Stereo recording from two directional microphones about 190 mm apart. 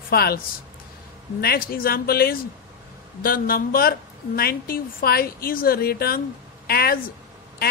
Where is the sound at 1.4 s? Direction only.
50° left (ahead or behind).